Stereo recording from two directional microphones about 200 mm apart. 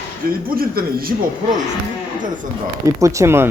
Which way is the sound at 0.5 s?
50° right (ahead or behind).